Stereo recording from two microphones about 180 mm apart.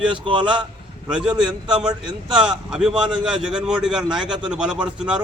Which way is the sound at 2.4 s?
5° right (ahead or behind).